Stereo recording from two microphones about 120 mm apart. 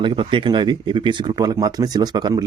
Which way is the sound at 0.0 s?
40° right (ahead or behind).